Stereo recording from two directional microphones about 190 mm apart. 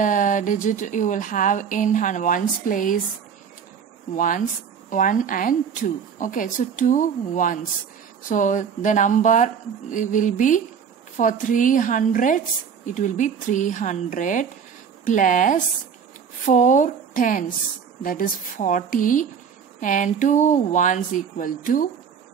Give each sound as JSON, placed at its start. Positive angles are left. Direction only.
{"t": 0.0, "sound": "speech", "side_deg": 45}
{"t": 4.1, "sound": "speech", "side_deg": 45}